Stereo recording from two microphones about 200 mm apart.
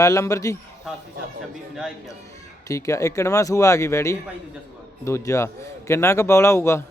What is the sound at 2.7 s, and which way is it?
Speech, 15° left (ahead or behind).